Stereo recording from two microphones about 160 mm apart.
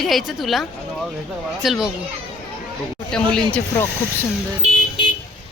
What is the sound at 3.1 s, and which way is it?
Speech, 5° left (ahead or behind).